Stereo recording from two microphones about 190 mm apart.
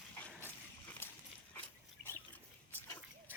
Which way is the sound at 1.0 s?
10° left (ahead or behind).